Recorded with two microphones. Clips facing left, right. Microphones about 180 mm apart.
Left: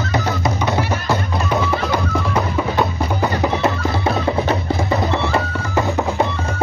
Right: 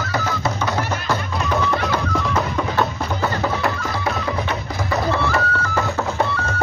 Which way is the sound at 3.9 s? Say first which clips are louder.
Left 4 dB; 30° left (ahead or behind).